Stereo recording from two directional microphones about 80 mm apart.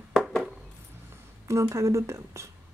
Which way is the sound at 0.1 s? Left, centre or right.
Centre.